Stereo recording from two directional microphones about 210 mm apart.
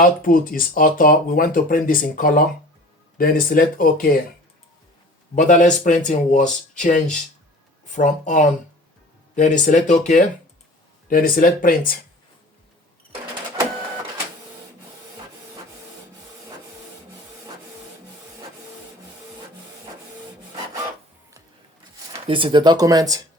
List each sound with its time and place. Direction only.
0.0 s speech: 40° left (ahead or behind)
5.3 s speech: 35° left (ahead or behind)
22.3 s speech: 25° right (ahead or behind)